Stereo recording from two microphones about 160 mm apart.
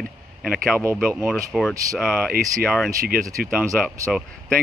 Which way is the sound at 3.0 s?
65° right (ahead or behind).